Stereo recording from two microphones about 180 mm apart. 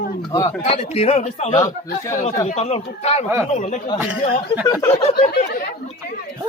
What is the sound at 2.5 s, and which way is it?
A man's voice, 35° left (ahead or behind).